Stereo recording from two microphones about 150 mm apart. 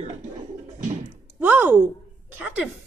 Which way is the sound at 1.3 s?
10° right (ahead or behind).